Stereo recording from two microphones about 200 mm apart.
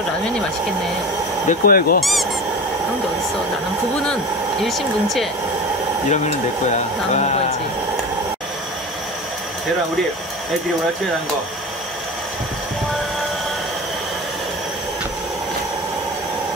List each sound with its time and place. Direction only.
1.5 s speech: 45° left (ahead or behind)
3.9 s speech: 5° left (ahead or behind)
6.0 s speech: 35° left (ahead or behind)